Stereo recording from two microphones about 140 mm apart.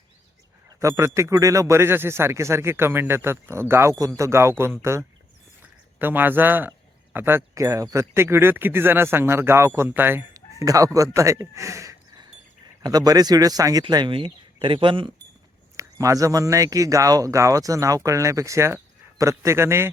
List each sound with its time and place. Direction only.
0.8 s speech: 20° right (ahead or behind); by 15.1 s 35° right (ahead or behind)
15.7 s speech: 20° right (ahead or behind)